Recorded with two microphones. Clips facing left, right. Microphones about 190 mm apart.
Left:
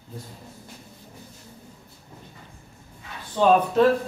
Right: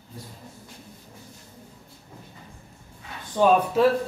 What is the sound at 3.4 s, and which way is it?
Speech, 10° right (ahead or behind).